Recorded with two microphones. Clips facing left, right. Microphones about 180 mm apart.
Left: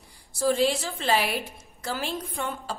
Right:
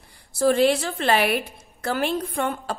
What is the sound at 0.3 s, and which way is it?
A woman's voice, 60° right (ahead or behind).